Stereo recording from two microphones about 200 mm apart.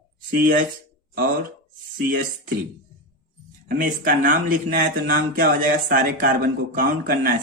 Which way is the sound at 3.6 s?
45° right (ahead or behind).